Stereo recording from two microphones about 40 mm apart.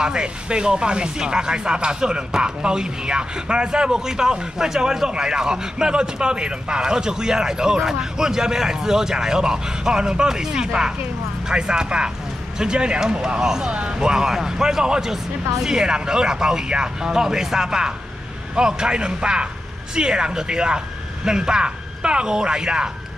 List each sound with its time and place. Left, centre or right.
0.0 s speech: right